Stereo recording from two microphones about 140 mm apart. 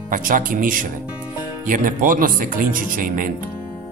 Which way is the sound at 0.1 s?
70° right (ahead or behind).